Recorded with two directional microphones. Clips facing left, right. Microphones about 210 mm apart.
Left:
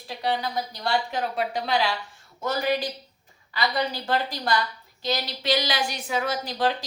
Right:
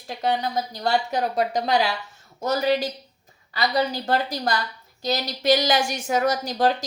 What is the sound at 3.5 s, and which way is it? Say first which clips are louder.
A woman's voice: right 3 dB; 40° right (ahead or behind).